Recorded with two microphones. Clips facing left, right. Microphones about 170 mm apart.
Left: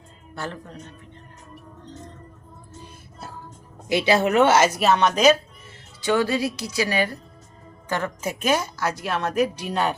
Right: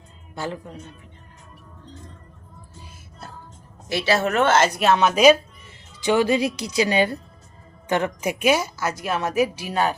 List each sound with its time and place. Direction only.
0.3 s a woman's voice: 10° right (ahead or behind)
2.8 s music: centre (ahead or behind)
3.8 s a woman's voice: 15° left (ahead or behind); by 9.9 s 5° right (ahead or behind)